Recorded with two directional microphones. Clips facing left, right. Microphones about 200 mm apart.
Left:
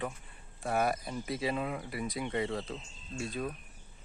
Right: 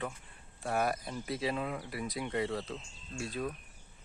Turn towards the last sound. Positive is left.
turn(degrees=0)  # may be behind; listen again after turning